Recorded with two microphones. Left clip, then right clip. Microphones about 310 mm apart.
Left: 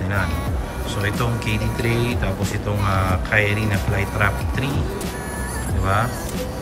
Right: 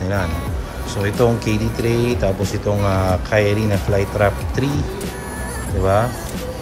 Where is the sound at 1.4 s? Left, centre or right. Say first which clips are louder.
Right 3 dB; centre.